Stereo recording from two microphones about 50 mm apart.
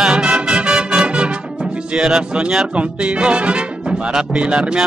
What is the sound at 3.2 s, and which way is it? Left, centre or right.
Speech, right.